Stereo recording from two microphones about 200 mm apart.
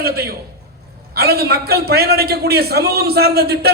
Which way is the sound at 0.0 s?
50° right (ahead or behind).